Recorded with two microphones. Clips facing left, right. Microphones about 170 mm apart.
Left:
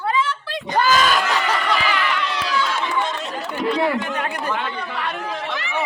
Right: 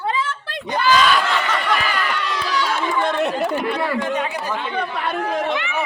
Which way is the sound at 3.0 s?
60° right (ahead or behind).